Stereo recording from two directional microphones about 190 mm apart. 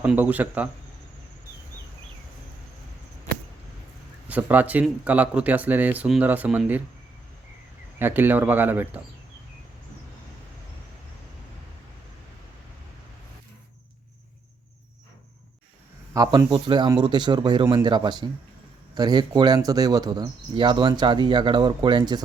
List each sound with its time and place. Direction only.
0.0 s speech: 10° right (ahead or behind)
4.3 s speech: 10° right (ahead or behind)
7.9 s speech: 10° right (ahead or behind)
16.1 s speech: 20° right (ahead or behind)